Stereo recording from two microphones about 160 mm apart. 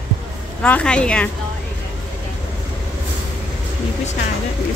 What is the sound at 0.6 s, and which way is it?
Speech, 5° left (ahead or behind).